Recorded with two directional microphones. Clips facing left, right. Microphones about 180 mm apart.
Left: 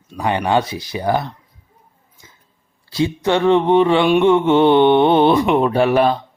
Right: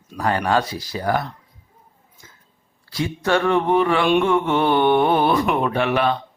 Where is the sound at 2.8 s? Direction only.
25° left (ahead or behind).